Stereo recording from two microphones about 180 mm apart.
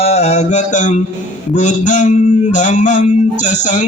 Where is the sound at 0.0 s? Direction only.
35° left (ahead or behind).